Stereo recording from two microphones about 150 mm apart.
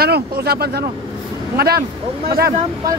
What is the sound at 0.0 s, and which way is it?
Speech, 90° right.